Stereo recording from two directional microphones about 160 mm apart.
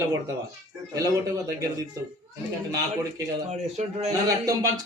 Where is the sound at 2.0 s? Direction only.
20° right (ahead or behind).